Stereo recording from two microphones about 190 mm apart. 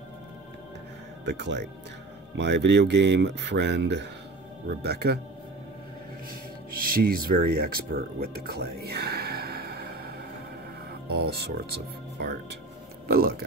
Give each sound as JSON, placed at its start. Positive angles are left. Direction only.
{"t": 1.2, "sound": "speech", "side_deg": -65}
{"t": 6.7, "sound": "speech", "side_deg": -50}